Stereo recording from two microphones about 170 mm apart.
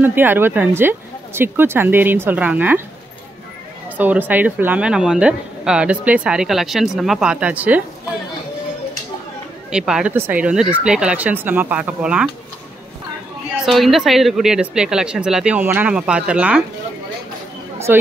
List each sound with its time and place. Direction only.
0.0 s speech: 10° right (ahead or behind)
3.9 s speech: 10° right (ahead or behind)
9.7 s speech: 5° right (ahead or behind)
13.7 s speech: centre (ahead or behind)
17.9 s speech: 10° right (ahead or behind)